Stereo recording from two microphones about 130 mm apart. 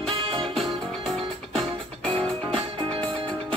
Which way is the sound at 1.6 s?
10° left (ahead or behind).